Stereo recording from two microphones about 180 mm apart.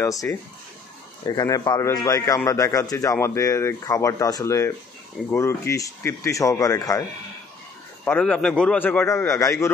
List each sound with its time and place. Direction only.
0.0 s a man's voice: 15° left (ahead or behind)
8.0 s speech: 5° left (ahead or behind)